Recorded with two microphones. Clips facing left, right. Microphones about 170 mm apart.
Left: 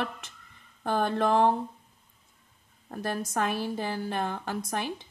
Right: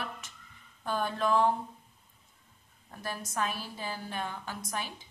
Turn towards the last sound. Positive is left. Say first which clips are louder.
# left 6 dB
turn(degrees=60)  # may be behind; listen again after turning